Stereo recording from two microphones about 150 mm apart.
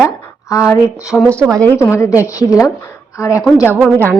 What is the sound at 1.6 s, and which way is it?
A woman's voice, 10° left (ahead or behind).